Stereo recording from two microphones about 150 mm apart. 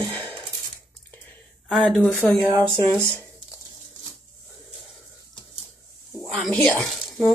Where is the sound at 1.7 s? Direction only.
Centre (ahead or behind).